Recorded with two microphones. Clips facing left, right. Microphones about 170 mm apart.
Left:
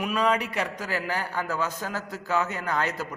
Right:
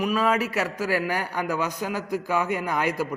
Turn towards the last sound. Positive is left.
turn(degrees=-10)  # may be behind; listen again after turning